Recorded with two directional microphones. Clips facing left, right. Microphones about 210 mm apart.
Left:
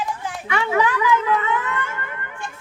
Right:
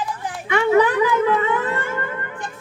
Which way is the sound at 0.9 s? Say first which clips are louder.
Right 3 dB; 30° right (ahead or behind).